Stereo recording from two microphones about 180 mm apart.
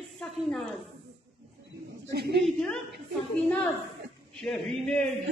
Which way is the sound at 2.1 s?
70° right (ahead or behind).